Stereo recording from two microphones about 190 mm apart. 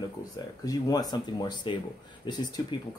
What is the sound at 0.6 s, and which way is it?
Speech, 20° left (ahead or behind).